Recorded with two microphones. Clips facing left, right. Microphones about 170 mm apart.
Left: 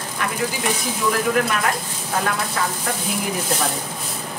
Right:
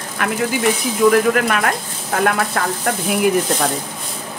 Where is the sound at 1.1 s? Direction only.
60° right (ahead or behind).